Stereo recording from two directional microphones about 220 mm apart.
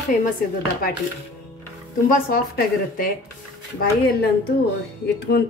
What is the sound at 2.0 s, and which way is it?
Speech, 40° left (ahead or behind).